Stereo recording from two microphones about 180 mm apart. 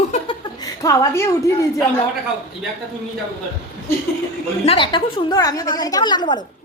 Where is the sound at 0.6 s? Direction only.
20° left (ahead or behind).